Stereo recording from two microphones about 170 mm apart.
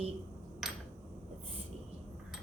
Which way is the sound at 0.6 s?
Centre (ahead or behind).